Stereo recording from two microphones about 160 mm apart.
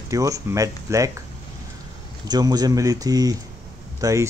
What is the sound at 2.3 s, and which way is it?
Speech, 25° right (ahead or behind).